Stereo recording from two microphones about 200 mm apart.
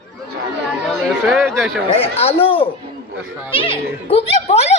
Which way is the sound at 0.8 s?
Centre (ahead or behind).